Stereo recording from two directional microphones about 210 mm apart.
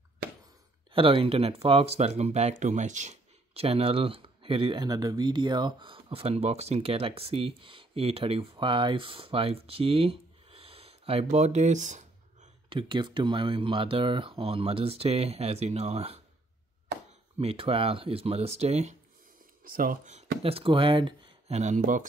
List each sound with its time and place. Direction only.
0.9 s speech: 25° right (ahead or behind)
17.4 s speech: 25° right (ahead or behind)